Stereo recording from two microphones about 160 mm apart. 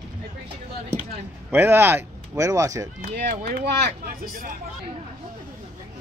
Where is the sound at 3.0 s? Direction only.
65° right (ahead or behind).